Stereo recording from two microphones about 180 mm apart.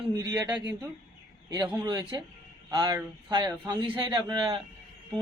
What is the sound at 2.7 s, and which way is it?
Speech, 25° right (ahead or behind).